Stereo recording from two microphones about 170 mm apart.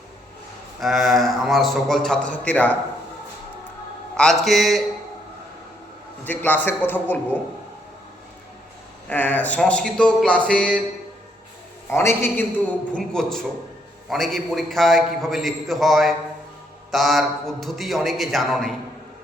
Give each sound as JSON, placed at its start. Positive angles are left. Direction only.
{"t": 0.8, "sound": "a man's voice", "side_deg": 0}
{"t": 4.2, "sound": "a man's voice", "side_deg": 0}
{"t": 6.2, "sound": "speech", "side_deg": 10}
{"t": 9.0, "sound": "speech", "side_deg": 10}
{"t": 11.9, "sound": "speech", "side_deg": 15}
{"t": 12.9, "sound": "a man's voice", "side_deg": 5}